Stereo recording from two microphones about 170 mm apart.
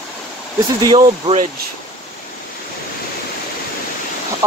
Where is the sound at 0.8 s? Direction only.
25° right (ahead or behind).